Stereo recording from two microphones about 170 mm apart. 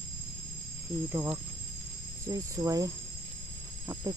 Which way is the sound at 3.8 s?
20° right (ahead or behind).